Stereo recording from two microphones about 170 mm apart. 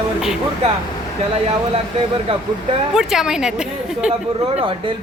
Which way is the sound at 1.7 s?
35° right (ahead or behind).